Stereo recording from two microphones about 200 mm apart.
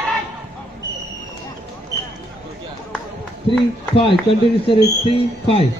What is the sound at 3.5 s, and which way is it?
Speech, 25° left (ahead or behind).